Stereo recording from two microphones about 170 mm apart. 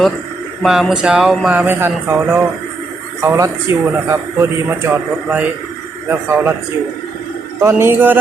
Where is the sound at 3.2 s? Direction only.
15° right (ahead or behind).